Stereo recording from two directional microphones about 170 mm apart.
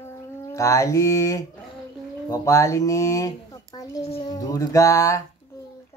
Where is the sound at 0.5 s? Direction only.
20° left (ahead or behind).